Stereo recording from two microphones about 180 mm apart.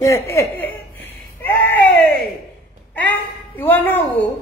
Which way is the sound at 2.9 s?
10° left (ahead or behind).